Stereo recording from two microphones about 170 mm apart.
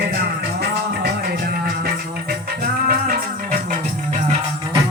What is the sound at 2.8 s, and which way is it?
Music, 60° right (ahead or behind).